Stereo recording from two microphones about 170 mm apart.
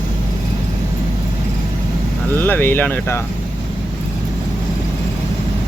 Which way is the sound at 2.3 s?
10° left (ahead or behind).